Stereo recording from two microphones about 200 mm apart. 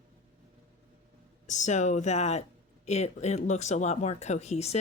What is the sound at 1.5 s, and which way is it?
Speech, 35° left (ahead or behind).